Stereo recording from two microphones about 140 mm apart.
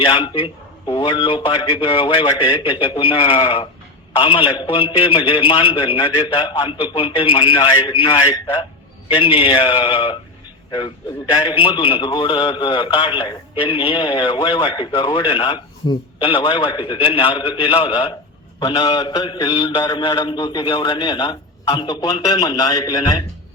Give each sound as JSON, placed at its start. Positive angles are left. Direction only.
{"t": 0.0, "sound": "mantra", "side_deg": 35}
{"t": 8.0, "sound": "a man's voice", "side_deg": 30}
{"t": 9.2, "sound": "mantra", "side_deg": 40}
{"t": 10.7, "sound": "a man's voice", "side_deg": 35}
{"t": 11.4, "sound": "mantra", "side_deg": 40}